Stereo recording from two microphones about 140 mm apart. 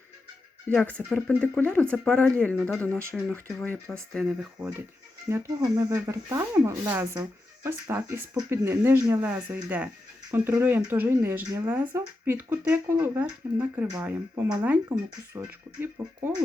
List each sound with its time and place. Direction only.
0.7 s speech: 10° left (ahead or behind)
5.3 s speech: 25° right (ahead or behind)